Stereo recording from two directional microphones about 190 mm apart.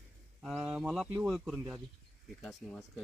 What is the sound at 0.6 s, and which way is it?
Speech, 5° right (ahead or behind).